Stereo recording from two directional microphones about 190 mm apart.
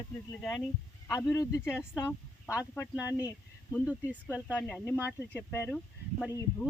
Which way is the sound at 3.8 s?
10° right (ahead or behind).